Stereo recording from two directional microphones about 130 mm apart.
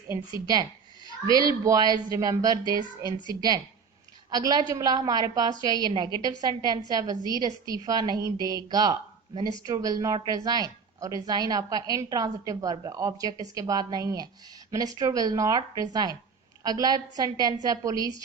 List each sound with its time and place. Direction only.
0.1 s a woman's voice: 25° right (ahead or behind)
4.3 s a woman's voice: 30° right (ahead or behind)